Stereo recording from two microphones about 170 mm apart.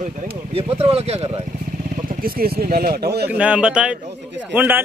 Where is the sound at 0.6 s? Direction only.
35° right (ahead or behind).